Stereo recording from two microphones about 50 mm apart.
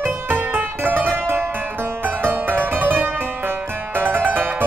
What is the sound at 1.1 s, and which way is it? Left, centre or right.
Music, right.